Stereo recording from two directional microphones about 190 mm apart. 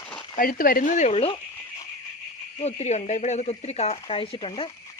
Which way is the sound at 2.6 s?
35° left (ahead or behind).